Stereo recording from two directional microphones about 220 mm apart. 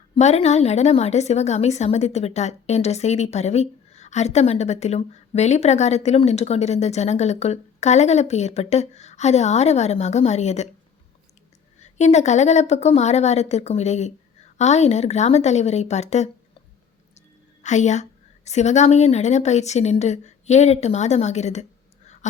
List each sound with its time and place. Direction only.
0.2 s a woman's voice: 30° left (ahead or behind)
11.8 s a woman's voice: 30° left (ahead or behind)